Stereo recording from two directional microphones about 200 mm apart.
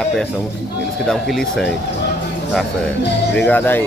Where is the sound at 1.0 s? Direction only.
Centre (ahead or behind).